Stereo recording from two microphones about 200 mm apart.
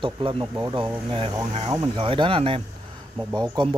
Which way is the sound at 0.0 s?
25° right (ahead or behind).